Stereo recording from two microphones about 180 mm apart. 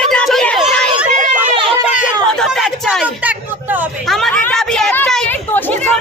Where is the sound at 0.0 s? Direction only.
5° left (ahead or behind).